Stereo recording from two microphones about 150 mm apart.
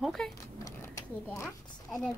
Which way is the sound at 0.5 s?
20° left (ahead or behind).